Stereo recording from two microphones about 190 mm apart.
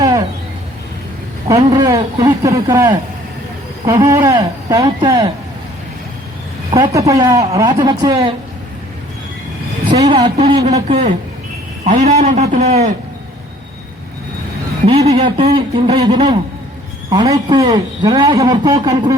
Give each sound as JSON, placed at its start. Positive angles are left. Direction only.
{"t": 0.0, "sound": "a sound", "side_deg": -20}
{"t": 1.5, "sound": "a man's voice", "side_deg": -20}
{"t": 6.7, "sound": "a man's voice", "side_deg": -20}
{"t": 9.9, "sound": "a man's voice", "side_deg": -20}
{"t": 14.8, "sound": "a man's voice", "side_deg": -30}